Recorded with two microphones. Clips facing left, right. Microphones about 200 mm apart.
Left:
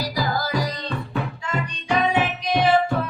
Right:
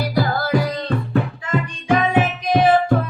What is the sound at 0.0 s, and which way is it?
Music, 60° right (ahead or behind).